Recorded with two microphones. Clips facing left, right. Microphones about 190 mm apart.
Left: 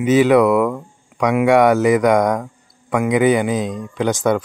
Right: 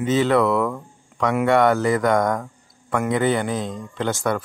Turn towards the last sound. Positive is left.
turn(degrees=20)  # may be behind; listen again after turning